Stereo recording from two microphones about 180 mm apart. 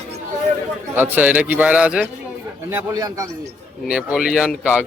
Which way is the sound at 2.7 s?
20° right (ahead or behind).